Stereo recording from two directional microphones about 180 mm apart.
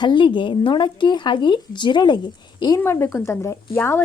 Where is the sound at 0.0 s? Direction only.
25° left (ahead or behind).